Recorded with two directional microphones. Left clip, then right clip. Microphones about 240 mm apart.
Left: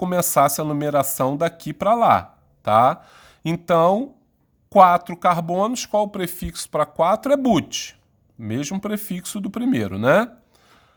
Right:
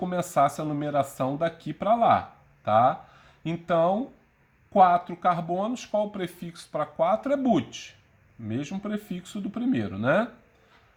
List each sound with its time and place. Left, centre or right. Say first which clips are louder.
0.0 s speech: left 6 dB; left